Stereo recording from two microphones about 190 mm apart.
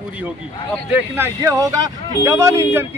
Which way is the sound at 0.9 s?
10° right (ahead or behind).